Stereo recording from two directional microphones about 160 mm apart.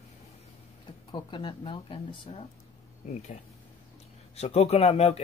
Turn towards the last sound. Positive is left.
turn(degrees=40)  # may be behind; listen again after turning